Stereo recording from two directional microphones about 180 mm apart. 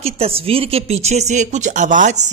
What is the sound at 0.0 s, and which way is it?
Speech, 35° right (ahead or behind).